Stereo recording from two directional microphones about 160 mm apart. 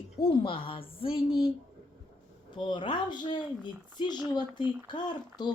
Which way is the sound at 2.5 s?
30° left (ahead or behind).